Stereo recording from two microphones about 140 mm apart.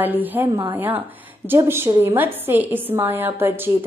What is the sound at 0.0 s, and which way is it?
A woman's voice, 10° right (ahead or behind).